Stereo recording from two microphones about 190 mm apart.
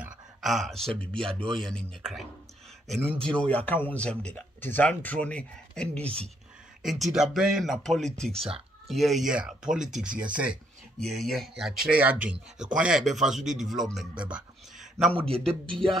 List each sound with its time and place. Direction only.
0.0 s a sound: centre (ahead or behind)
1.2 s speech: centre (ahead or behind)
15.6 s music: 25° right (ahead or behind)